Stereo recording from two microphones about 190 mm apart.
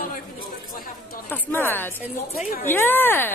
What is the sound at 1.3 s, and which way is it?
A woman's voice, 10° left (ahead or behind).